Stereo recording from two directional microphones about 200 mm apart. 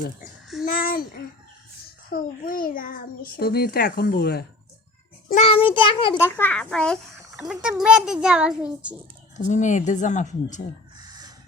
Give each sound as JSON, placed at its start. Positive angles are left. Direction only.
{"t": 0.6, "sound": "a child's voice", "side_deg": 45}
{"t": 5.4, "sound": "a child's voice", "side_deg": 30}
{"t": 6.1, "sound": "a child's voice", "side_deg": 10}
{"t": 9.5, "sound": "speech", "side_deg": 40}
{"t": 10.9, "sound": "a sound", "side_deg": -20}